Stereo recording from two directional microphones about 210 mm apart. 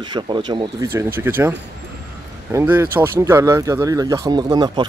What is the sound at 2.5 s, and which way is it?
Speech, 10° right (ahead or behind).